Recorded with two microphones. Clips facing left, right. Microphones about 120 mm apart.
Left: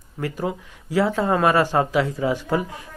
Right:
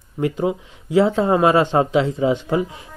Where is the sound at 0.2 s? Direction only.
20° right (ahead or behind).